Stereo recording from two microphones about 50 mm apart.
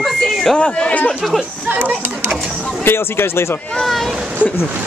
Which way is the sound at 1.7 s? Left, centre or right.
Right.